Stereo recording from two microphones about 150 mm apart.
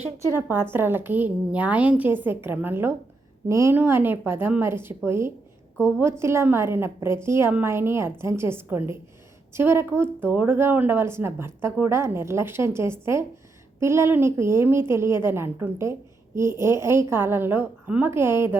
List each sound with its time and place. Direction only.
0.3 s a woman's voice: 15° right (ahead or behind)